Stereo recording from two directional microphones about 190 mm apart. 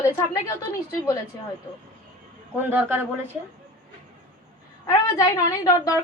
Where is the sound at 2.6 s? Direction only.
10° right (ahead or behind).